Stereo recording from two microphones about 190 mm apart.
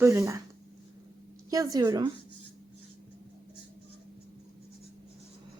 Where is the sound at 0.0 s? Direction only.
15° right (ahead or behind).